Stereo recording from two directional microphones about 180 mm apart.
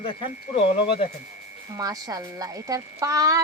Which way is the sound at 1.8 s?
20° right (ahead or behind).